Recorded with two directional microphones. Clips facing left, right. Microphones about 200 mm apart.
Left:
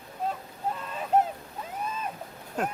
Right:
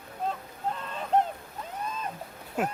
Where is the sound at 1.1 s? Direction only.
5° left (ahead or behind).